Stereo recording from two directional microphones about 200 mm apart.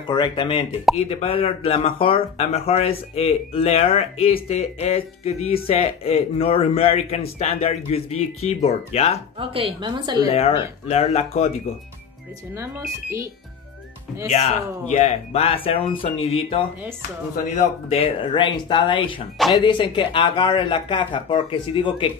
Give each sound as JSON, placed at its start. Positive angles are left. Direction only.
{"t": 0.0, "sound": "speech", "side_deg": 25}
{"t": 9.4, "sound": "a woman's voice", "side_deg": -25}
{"t": 10.2, "sound": "speech", "side_deg": 30}
{"t": 14.9, "sound": "speech", "side_deg": 30}
{"t": 19.3, "sound": "speech", "side_deg": 0}
{"t": 19.6, "sound": "speech", "side_deg": 25}